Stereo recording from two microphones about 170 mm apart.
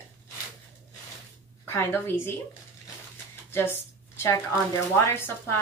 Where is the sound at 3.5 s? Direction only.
15° left (ahead or behind).